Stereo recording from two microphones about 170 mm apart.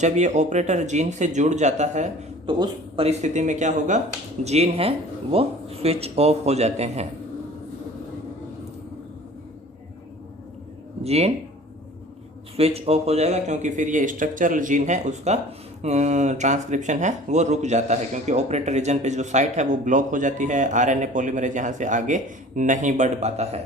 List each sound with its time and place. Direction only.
0.0 s a man's voice: 45° right (ahead or behind)
2.5 s a man's voice: 30° right (ahead or behind)
11.0 s speech: 40° right (ahead or behind)
12.5 s a man's voice: 35° right (ahead or behind)